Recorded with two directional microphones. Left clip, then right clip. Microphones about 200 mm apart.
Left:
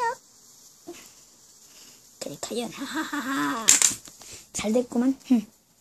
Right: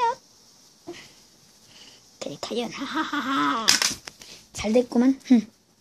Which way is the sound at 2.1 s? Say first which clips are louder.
Right 2 dB; 10° left (ahead or behind).